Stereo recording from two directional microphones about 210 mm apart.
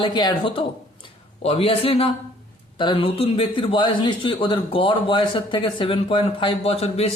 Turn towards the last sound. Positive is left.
turn(degrees=30)  # may be behind; listen again after turning